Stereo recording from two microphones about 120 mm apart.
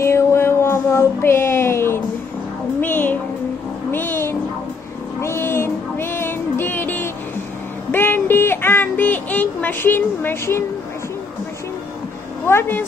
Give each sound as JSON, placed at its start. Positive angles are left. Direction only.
{"t": 0.0, "sound": "a sound", "side_deg": 20}
{"t": 2.8, "sound": "music", "side_deg": 15}
{"t": 3.9, "sound": "cat", "side_deg": 15}
{"t": 5.2, "sound": "music", "side_deg": 20}
{"t": 12.4, "sound": "speech", "side_deg": 20}